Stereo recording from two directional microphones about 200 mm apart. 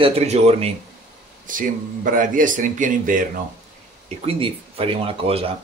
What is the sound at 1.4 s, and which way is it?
Speech, 40° right (ahead or behind).